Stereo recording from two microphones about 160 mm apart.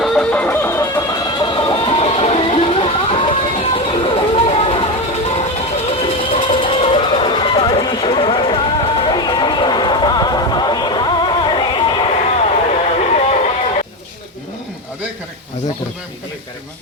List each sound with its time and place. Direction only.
0.0 s music: 5° left (ahead or behind); by 12.1 s 30° left (ahead or behind)
12.6 s music: 45° left (ahead or behind)